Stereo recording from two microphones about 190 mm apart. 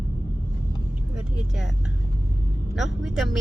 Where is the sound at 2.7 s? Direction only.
Centre (ahead or behind).